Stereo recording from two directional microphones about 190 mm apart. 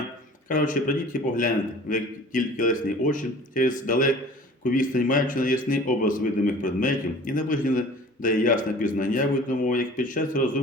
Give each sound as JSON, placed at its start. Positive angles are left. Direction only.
{"t": 0.4, "sound": "a man's voice", "side_deg": 45}